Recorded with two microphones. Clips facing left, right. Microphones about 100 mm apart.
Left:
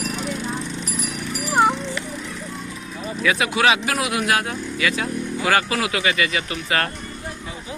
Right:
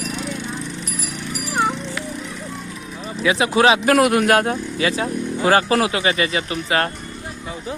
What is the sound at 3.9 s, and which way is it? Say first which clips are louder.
Speech: right 7 dB; 50° right (ahead or behind).